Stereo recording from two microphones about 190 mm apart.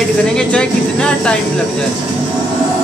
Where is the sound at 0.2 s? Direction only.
5° left (ahead or behind).